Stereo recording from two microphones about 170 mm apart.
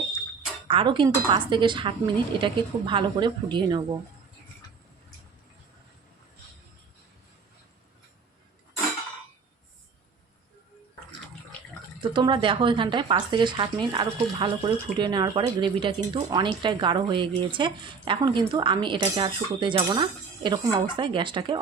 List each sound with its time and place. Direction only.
0.7 s speech: 30° right (ahead or behind)
12.1 s speech: 30° right (ahead or behind)